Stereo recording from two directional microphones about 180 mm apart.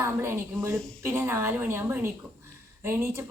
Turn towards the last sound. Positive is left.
turn(degrees=-15)  # may be behind; listen again after turning